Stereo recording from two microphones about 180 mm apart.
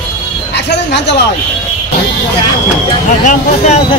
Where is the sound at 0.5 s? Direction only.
70° left (ahead or behind).